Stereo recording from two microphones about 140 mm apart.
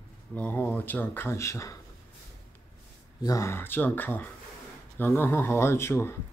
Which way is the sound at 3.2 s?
20° left (ahead or behind).